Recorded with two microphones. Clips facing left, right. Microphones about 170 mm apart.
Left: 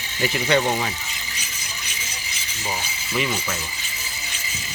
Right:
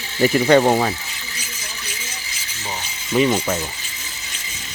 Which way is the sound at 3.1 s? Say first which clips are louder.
Right 8 dB; 40° right (ahead or behind).